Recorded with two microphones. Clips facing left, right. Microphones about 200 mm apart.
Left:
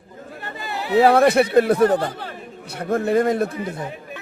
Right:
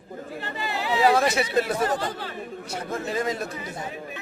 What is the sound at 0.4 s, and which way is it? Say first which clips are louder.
Speech: left 1 dB; 55° left (ahead or behind).